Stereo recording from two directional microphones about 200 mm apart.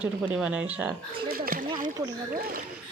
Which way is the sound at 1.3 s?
45° right (ahead or behind).